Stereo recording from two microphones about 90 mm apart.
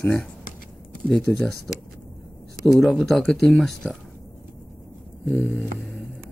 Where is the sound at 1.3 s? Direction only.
15° left (ahead or behind).